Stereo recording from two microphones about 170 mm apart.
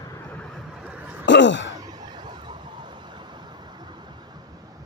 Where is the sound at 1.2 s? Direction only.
90° left.